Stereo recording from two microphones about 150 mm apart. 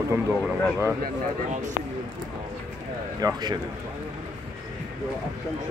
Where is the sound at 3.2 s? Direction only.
25° right (ahead or behind).